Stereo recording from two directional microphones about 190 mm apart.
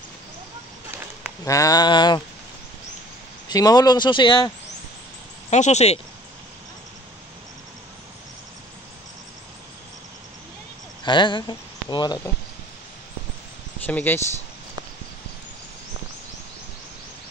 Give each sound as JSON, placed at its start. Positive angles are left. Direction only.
{"t": 1.4, "sound": "speech", "side_deg": 20}
{"t": 3.4, "sound": "speech", "side_deg": 20}
{"t": 5.5, "sound": "speech", "side_deg": 35}
{"t": 11.1, "sound": "speech", "side_deg": 25}
{"t": 13.8, "sound": "speech", "side_deg": 10}